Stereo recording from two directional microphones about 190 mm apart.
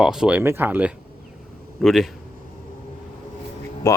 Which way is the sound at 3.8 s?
15° left (ahead or behind).